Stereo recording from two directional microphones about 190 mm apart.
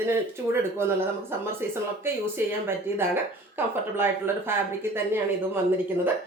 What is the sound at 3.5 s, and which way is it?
Speech, 10° right (ahead or behind).